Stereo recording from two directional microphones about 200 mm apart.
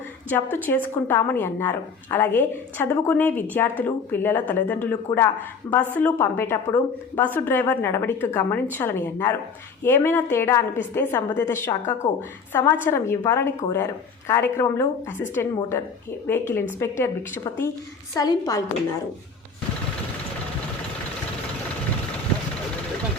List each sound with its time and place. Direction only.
0.5 s a woman's voice: 10° left (ahead or behind)
12.0 s a woman's voice: 35° left (ahead or behind)
12.5 s a woman's voice: 10° left (ahead or behind)